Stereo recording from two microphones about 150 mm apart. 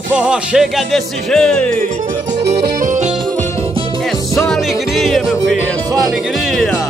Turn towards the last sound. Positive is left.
turn(degrees=0)  # may be behind; listen again after turning